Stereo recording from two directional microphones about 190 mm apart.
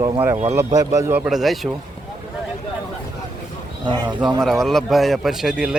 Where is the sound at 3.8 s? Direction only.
25° right (ahead or behind).